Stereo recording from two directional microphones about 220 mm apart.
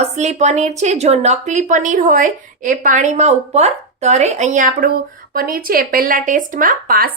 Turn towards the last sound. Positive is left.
turn(degrees=-40)  # may be behind; listen again after turning